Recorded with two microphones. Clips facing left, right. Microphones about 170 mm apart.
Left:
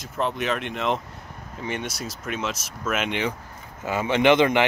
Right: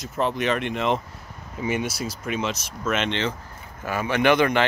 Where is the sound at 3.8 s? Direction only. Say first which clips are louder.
Left 1 dB; 20° left (ahead or behind).